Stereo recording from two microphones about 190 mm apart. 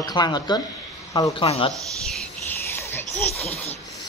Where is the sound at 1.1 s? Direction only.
20° left (ahead or behind).